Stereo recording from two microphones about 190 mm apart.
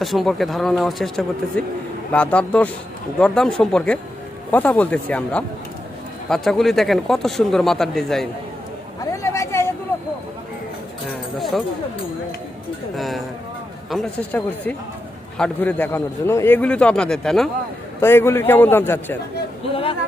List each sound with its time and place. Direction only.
0.0 s a man's voice: centre (ahead or behind)
9.2 s a sound: 15° left (ahead or behind)
11.3 s a sound: centre (ahead or behind)
13.0 s a man's voice: centre (ahead or behind)
18.0 s a man's voice: 10° left (ahead or behind)
19.7 s speech: 30° left (ahead or behind)